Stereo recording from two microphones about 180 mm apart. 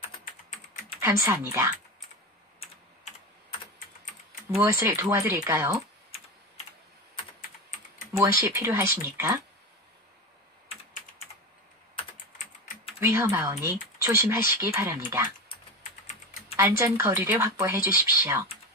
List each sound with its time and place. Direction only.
1.0 s speech: 15° right (ahead or behind)
4.6 s speech: 15° right (ahead or behind)
8.2 s speech: 15° right (ahead or behind)
11.9 s typing: 30° left (ahead or behind)
13.0 s speech: 15° right (ahead or behind)
16.5 s speech: 15° right (ahead or behind)